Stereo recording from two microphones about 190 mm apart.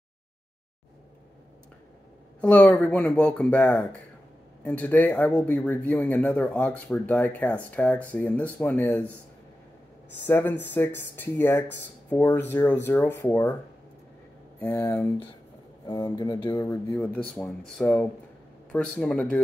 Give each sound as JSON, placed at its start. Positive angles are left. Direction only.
{"t": 2.4, "sound": "speech", "side_deg": 5}
{"t": 10.2, "sound": "speech", "side_deg": 10}
{"t": 14.6, "sound": "speech", "side_deg": 10}
{"t": 15.9, "sound": "speech", "side_deg": 20}